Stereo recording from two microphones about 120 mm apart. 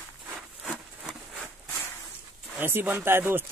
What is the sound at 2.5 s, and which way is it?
Speech, 15° right (ahead or behind).